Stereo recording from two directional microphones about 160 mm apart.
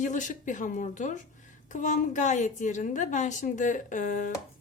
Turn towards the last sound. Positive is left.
turn(degrees=55)  # may be behind; listen again after turning